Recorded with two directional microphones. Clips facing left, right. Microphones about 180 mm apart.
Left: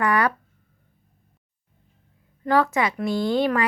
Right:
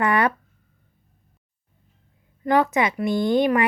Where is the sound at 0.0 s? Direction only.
25° right (ahead or behind).